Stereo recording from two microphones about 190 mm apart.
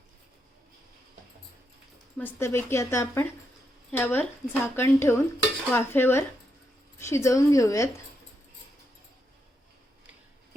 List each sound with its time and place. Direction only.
2.1 s a woman's voice: 10° left (ahead or behind)